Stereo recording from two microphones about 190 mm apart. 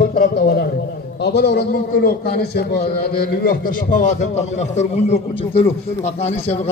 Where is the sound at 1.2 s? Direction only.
55° left (ahead or behind).